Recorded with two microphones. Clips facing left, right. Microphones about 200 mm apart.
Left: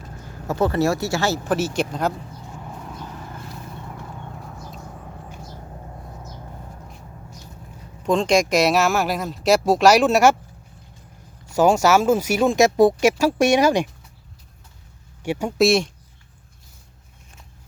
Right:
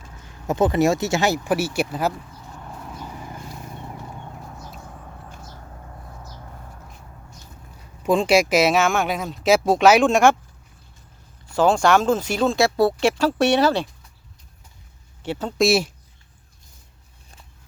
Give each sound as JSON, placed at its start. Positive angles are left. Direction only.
{"t": 0.4, "sound": "speech", "side_deg": -15}
{"t": 2.7, "sound": "vehicle", "side_deg": 0}
{"t": 8.0, "sound": "speech", "side_deg": -5}
{"t": 11.5, "sound": "speech", "side_deg": 10}
{"t": 15.2, "sound": "speech", "side_deg": 10}
{"t": 15.6, "sound": "speech", "side_deg": -5}